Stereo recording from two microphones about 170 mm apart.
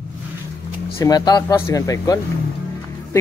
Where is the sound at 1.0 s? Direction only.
20° left (ahead or behind).